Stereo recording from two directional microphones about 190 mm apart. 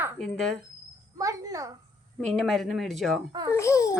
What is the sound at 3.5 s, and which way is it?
Speech, 15° left (ahead or behind).